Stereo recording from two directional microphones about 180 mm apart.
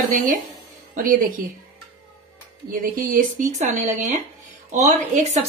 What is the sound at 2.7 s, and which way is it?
Speech, 50° right (ahead or behind).